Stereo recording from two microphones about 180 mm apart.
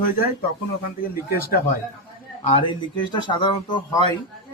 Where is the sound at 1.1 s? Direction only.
55° left (ahead or behind).